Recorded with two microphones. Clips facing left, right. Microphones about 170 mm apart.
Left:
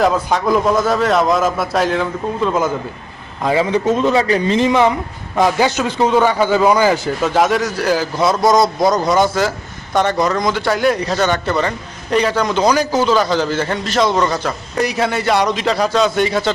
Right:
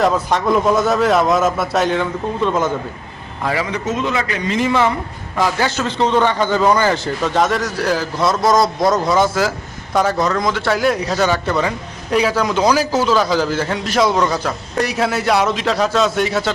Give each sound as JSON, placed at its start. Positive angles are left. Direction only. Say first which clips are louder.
{"t": 0.0, "sound": "a man's voice", "louder": "left 1 dB", "side_deg": 0}
{"t": 3.4, "sound": "speech", "louder": "left 6 dB", "side_deg": 25}
{"t": 4.6, "sound": "a woman's voice", "louder": "left 3 dB", "side_deg": 15}